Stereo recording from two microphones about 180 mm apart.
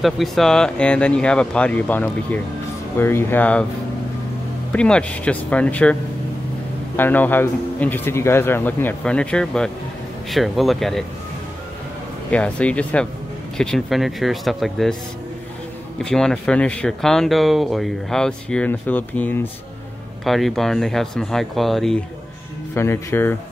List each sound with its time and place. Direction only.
0.0 s speech: centre (ahead or behind)
4.7 s speech: 5° left (ahead or behind)
7.0 s speech: 10° left (ahead or behind)
12.3 s speech: 5° left (ahead or behind)
16.0 s speech: 5° left (ahead or behind)
22.8 s speech: 15° left (ahead or behind)